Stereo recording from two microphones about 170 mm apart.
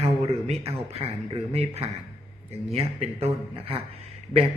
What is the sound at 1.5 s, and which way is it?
Speech, 35° right (ahead or behind).